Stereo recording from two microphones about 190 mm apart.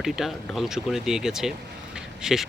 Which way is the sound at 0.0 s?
Centre (ahead or behind).